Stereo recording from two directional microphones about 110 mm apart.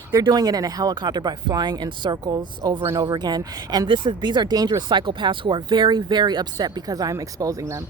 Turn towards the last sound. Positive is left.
turn(degrees=-30)  # may be behind; listen again after turning